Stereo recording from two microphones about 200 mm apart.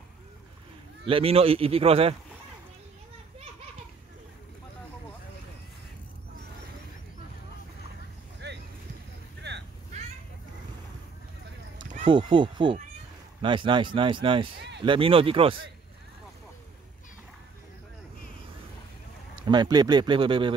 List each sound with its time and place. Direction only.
1.0 s speech: 30° right (ahead or behind)
8.4 s vehicle: 55° right (ahead or behind)
12.0 s speech: 25° right (ahead or behind)
19.4 s speech: 20° right (ahead or behind)